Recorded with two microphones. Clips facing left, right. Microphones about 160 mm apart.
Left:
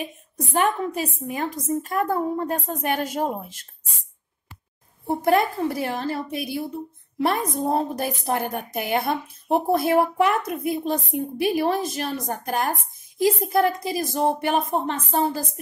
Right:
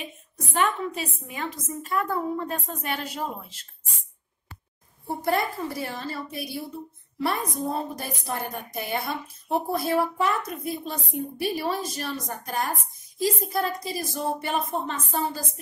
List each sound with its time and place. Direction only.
0.5 s a woman's voice: 45° left (ahead or behind)
5.0 s a woman's voice: 50° left (ahead or behind)